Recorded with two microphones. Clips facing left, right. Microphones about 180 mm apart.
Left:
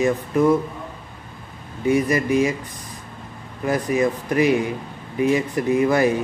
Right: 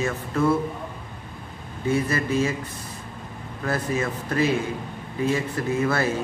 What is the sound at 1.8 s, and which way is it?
Speech, 15° left (ahead or behind).